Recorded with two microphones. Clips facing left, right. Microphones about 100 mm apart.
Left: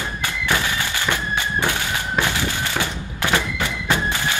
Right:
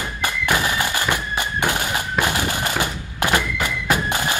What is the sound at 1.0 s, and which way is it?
Bagpipes, 15° right (ahead or behind).